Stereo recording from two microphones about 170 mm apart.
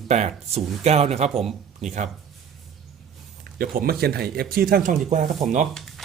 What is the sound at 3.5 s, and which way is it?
Speech, 60° right (ahead or behind).